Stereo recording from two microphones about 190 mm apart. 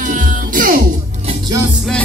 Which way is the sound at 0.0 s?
45° right (ahead or behind).